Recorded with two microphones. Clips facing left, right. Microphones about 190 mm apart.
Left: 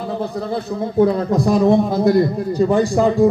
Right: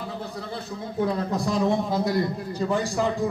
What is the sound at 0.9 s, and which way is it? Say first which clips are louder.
A man's voice: left 10 dB; 65° left (ahead or behind).